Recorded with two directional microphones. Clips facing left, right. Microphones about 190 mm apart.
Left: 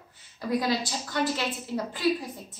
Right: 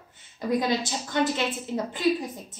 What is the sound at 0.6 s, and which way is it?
A woman's voice, 20° right (ahead or behind).